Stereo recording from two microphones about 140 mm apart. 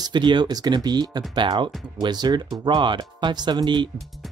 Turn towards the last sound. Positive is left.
turn(degrees=-35)  # may be behind; listen again after turning